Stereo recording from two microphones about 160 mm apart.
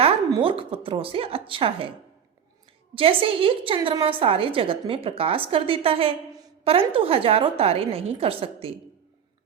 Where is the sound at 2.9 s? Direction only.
35° right (ahead or behind).